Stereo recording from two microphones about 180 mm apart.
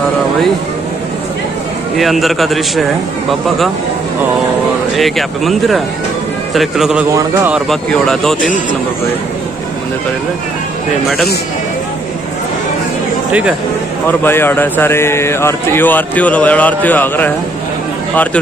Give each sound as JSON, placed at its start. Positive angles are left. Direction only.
{"t": 2.0, "sound": "speech", "side_deg": 0}
{"t": 4.9, "sound": "speech", "side_deg": 0}
{"t": 7.1, "sound": "a man's voice", "side_deg": -15}
{"t": 7.5, "sound": "speech", "side_deg": 0}
{"t": 13.3, "sound": "a man's voice", "side_deg": -5}
{"t": 14.0, "sound": "a man's voice", "side_deg": 10}